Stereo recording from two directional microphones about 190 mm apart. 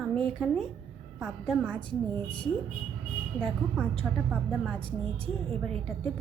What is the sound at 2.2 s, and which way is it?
Speech, 25° left (ahead or behind).